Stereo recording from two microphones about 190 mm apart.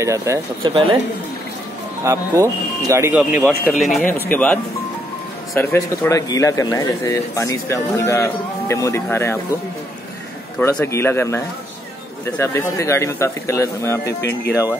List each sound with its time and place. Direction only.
0.0 s speech: 15° right (ahead or behind)
2.0 s speech: 15° right (ahead or behind)
4.1 s a man's voice: 10° left (ahead or behind)
10.6 s a man's voice: 15° left (ahead or behind)
14.0 s speech: 60° left (ahead or behind)
14.5 s a man's voice: 15° left (ahead or behind)